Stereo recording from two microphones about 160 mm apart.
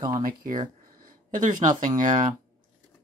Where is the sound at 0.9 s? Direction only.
60° right (ahead or behind).